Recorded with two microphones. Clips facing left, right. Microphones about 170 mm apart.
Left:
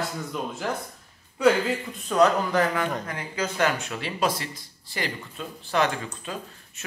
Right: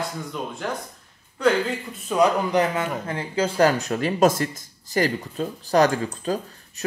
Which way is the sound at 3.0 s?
30° right (ahead or behind).